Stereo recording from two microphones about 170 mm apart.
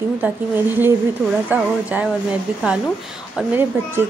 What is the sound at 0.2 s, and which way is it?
Speech, 10° right (ahead or behind).